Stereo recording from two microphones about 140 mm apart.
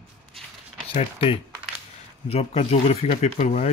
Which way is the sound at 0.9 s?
50° left (ahead or behind).